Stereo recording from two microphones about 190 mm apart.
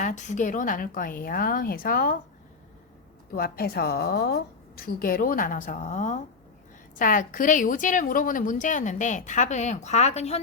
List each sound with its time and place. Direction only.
0.0 s a woman's voice: 40° left (ahead or behind)
3.3 s a woman's voice: 55° left (ahead or behind); by 10.4 s 35° left (ahead or behind)